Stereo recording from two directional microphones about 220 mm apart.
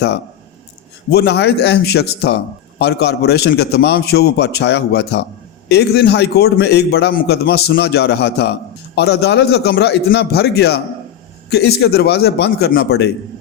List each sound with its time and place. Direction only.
1.1 s speech: 50° left (ahead or behind)